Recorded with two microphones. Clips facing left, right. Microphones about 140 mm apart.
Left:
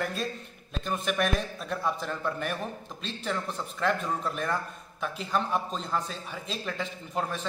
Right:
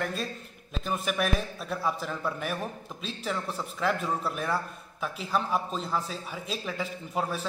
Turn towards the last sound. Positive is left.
turn(degrees=-5)  # may be behind; listen again after turning